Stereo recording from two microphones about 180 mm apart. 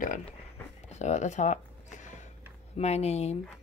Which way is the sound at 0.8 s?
40° left (ahead or behind).